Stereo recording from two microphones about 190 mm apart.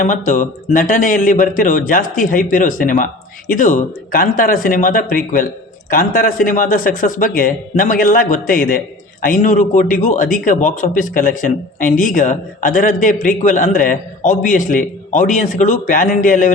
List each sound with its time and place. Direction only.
0.3 s a man's voice: 45° left (ahead or behind)